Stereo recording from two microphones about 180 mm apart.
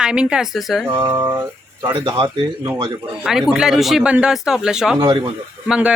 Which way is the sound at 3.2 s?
Centre (ahead or behind).